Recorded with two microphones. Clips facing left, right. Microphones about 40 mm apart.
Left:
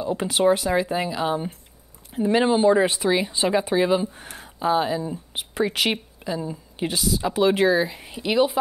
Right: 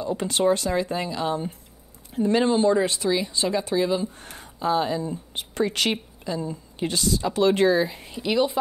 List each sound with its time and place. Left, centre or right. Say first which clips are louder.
0.0 s speech: left 2 dB; centre
4.2 s speech: left 2 dB; centre